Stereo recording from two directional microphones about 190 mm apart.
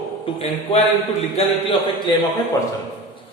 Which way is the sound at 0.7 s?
25° left (ahead or behind).